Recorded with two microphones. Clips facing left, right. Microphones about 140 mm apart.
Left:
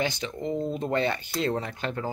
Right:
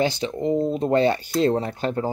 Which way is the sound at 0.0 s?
35° right (ahead or behind).